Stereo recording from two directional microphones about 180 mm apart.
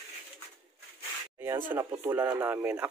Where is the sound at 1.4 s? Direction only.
10° right (ahead or behind).